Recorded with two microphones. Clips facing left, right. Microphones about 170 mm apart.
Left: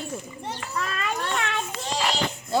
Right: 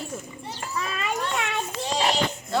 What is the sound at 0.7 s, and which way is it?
Children playing, 10° right (ahead or behind).